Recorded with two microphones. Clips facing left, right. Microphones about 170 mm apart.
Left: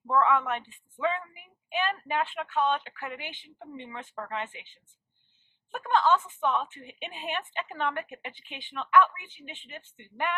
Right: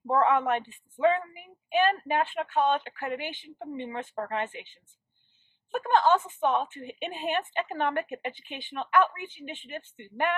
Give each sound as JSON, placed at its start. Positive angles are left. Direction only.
{"t": 0.1, "sound": "a woman's voice", "side_deg": -45}
{"t": 5.7, "sound": "a woman's voice", "side_deg": -45}